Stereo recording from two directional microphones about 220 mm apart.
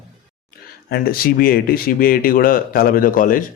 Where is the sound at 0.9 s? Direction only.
45° left (ahead or behind).